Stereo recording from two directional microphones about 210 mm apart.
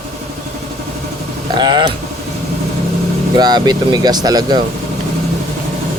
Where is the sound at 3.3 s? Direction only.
20° right (ahead or behind).